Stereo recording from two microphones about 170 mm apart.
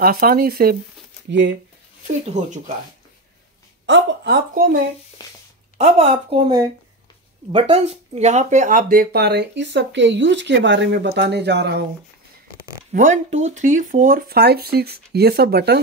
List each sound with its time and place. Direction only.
0.0 s speech: 60° right (ahead or behind)
1.3 s a woman's voice: 90° right
2.3 s speech: 45° right (ahead or behind)
3.8 s a woman's voice: 90° right
5.8 s a woman's voice: 40° right (ahead or behind)
7.5 s speech: 35° right (ahead or behind); by 11.8 s 80° right
12.9 s speech: 45° right (ahead or behind); by 15.8 s 75° right (ahead or behind)